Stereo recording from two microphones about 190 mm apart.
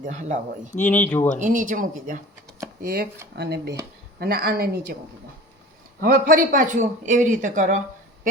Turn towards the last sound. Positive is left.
turn(degrees=-40)  # may be behind; listen again after turning